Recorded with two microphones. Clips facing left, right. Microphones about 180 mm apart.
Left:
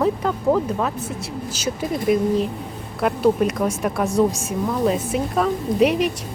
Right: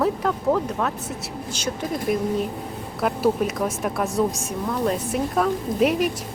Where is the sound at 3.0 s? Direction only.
Centre (ahead or behind).